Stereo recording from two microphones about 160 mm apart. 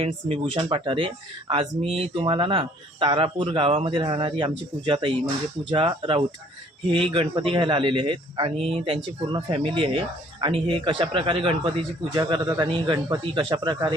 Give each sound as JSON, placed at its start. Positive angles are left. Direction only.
{"t": 0.0, "sound": "speech", "side_deg": -35}